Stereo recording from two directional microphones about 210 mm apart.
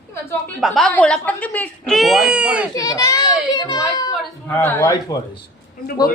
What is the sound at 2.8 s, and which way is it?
A child's voice, 15° left (ahead or behind).